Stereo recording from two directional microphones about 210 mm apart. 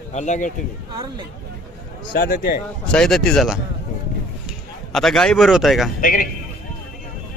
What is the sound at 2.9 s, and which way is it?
A man's voice, centre (ahead or behind).